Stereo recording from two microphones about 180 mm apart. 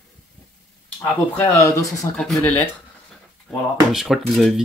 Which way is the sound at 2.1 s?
5° left (ahead or behind).